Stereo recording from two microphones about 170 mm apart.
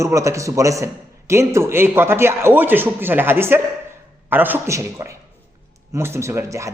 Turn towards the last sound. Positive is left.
turn(degrees=-20)  # may be behind; listen again after turning